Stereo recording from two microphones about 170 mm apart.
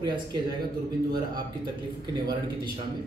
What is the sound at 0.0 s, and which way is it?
Speech, 25° right (ahead or behind).